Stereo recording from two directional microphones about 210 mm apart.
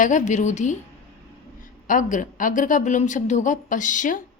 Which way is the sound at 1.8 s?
40° left (ahead or behind).